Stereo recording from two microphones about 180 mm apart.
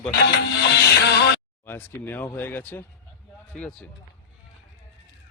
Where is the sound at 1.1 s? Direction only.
70° left (ahead or behind).